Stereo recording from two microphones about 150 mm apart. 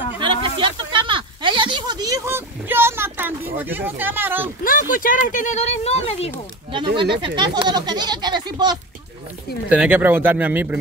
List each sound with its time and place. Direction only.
0.2 s a sound: 35° right (ahead or behind); by 4.5 s 15° right (ahead or behind)
4.6 s speech: 65° left (ahead or behind); by 6.3 s 45° left (ahead or behind)
7.2 s speech: 30° right (ahead or behind)
9.7 s speech: 10° right (ahead or behind)